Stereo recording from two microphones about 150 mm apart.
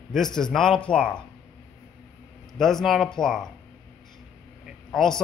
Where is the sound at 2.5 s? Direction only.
Centre (ahead or behind).